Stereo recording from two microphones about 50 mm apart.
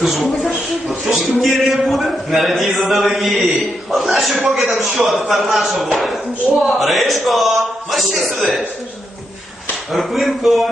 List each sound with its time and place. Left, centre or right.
0.0 s a man's voice: centre
9.9 s a man's voice: centre